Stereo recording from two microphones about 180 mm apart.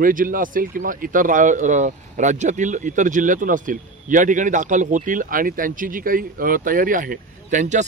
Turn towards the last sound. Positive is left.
turn(degrees=-45)  # may be behind; listen again after turning